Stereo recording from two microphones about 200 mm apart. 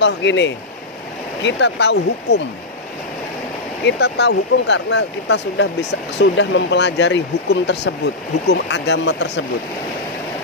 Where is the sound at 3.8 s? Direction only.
60° left (ahead or behind).